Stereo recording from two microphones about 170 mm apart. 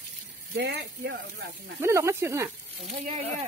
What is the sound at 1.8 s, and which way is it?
Speech, 15° right (ahead or behind).